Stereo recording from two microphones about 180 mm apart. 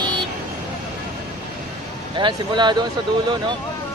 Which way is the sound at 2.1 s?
25° right (ahead or behind).